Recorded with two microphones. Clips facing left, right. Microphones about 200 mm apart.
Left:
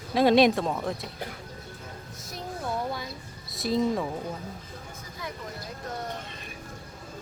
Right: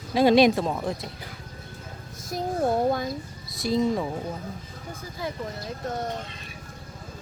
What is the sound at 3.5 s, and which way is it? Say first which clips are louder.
Speech: right 2 dB; centre (ahead or behind).